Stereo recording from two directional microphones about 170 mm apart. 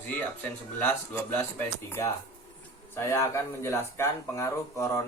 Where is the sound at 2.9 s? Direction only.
15° left (ahead or behind).